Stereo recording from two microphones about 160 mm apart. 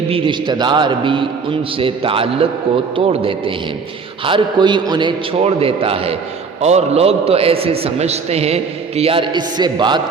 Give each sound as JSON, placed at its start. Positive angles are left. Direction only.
{"t": 0.1, "sound": "a man's voice", "side_deg": -30}